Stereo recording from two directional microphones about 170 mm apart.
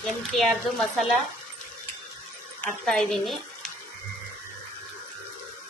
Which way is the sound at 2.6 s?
5° left (ahead or behind).